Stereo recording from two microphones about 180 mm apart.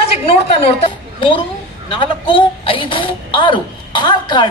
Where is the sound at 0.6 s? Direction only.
30° left (ahead or behind).